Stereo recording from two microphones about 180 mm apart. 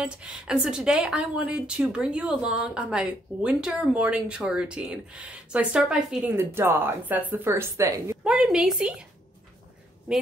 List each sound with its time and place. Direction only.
0.0 s a woman's voice: 5° right (ahead or behind)
8.3 s a woman's voice: 5° right (ahead or behind)